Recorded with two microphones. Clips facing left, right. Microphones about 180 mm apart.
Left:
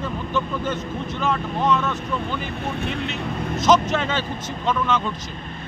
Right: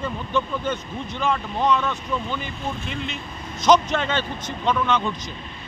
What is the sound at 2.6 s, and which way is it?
Speech, 65° left (ahead or behind).